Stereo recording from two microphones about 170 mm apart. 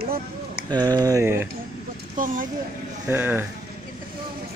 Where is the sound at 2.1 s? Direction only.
50° right (ahead or behind).